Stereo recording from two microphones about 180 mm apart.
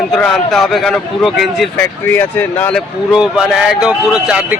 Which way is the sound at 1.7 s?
10° left (ahead or behind).